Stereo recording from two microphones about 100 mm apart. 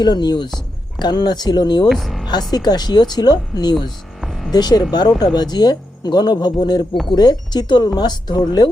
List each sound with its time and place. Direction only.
0.0 s speech: 45° left (ahead or behind)
1.9 s speech: centre (ahead or behind)
2.5 s speech: 45° left (ahead or behind)
4.2 s a sound: centre (ahead or behind)
4.5 s speech: 45° left (ahead or behind)